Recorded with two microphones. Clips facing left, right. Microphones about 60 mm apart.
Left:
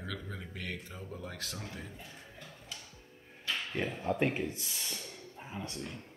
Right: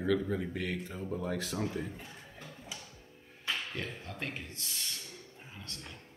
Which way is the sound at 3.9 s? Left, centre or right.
Left.